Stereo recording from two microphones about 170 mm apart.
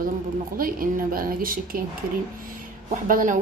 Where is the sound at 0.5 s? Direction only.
55° right (ahead or behind).